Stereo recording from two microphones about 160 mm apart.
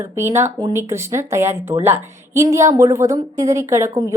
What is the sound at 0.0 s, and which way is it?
A woman's voice, 15° right (ahead or behind).